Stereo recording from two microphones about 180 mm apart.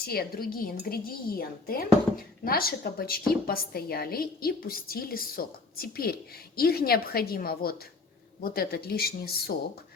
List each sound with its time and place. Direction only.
0.0 s a woman's voice: 55° left (ahead or behind)